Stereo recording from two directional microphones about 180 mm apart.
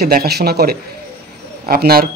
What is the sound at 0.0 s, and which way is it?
Speech, 60° right (ahead or behind).